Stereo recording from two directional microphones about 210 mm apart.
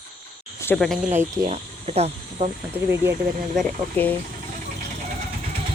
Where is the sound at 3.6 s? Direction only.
10° left (ahead or behind).